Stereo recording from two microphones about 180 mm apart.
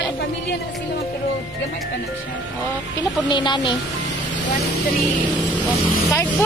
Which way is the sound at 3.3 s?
25° left (ahead or behind).